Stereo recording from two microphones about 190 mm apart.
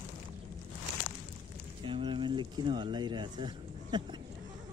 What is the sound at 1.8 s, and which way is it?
Speech, 25° right (ahead or behind).